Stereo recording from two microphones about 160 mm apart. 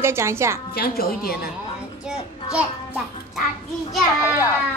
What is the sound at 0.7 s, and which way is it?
Speech, 70° left (ahead or behind).